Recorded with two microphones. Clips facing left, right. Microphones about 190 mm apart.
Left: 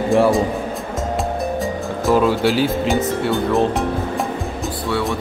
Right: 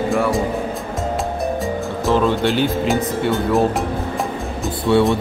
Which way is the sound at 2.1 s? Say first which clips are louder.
Left 1 dB; 5° left (ahead or behind).